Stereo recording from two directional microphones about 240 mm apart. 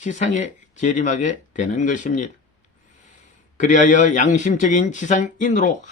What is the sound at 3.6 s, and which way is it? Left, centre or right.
Speech, left.